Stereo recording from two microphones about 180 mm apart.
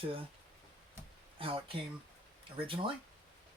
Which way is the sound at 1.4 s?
30° right (ahead or behind).